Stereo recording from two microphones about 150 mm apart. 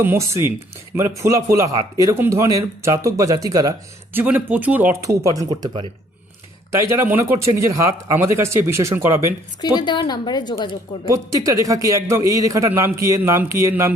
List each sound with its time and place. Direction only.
0.0 s speech: 15° right (ahead or behind)
5.0 s speech: 20° right (ahead or behind)
9.6 s a woman's voice: 30° left (ahead or behind)
11.1 s speech: 20° right (ahead or behind)